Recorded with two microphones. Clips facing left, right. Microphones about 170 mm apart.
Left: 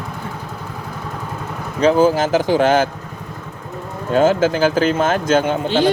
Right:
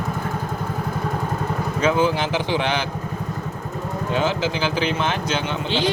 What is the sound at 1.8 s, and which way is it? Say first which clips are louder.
A man's voice: left 7 dB; 35° left (ahead or behind).